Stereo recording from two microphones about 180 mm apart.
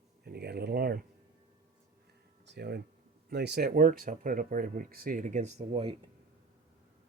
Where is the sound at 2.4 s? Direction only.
70° right (ahead or behind).